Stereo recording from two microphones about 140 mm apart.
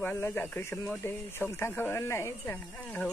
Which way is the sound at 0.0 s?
15° left (ahead or behind).